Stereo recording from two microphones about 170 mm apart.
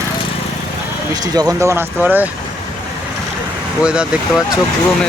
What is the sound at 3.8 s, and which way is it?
Speech, 5° right (ahead or behind).